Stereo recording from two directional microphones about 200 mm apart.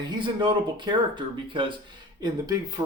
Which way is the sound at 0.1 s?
25° right (ahead or behind).